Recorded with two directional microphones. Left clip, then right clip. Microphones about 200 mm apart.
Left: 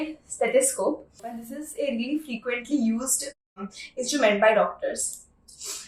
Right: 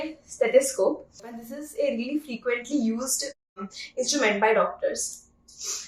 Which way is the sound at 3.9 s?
20° right (ahead or behind).